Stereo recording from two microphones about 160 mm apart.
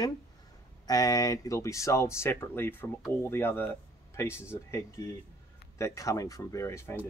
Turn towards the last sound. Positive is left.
turn(degrees=15)  # may be behind; listen again after turning